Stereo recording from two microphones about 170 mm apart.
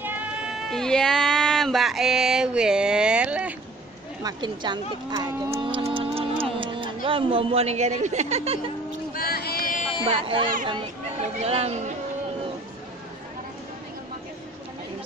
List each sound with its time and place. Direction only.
0.0 s sheep: centre (ahead or behind)
4.2 s speech: 25° right (ahead or behind)
5.9 s music: 35° right (ahead or behind)
6.6 s speech: 30° right (ahead or behind)
9.1 s a sound: 60° left (ahead or behind)
10.0 s speech: 30° right (ahead or behind)